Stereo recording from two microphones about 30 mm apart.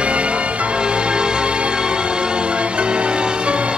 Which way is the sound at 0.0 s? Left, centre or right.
Right.